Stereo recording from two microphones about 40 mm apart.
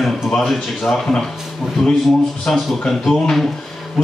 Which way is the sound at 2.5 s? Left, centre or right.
Centre.